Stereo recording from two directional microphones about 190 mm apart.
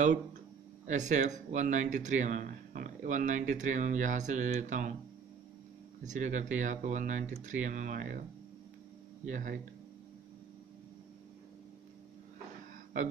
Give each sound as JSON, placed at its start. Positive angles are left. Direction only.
{"t": 0.0, "sound": "speech", "side_deg": -40}
{"t": 6.0, "sound": "speech", "side_deg": -40}
{"t": 9.2, "sound": "speech", "side_deg": -45}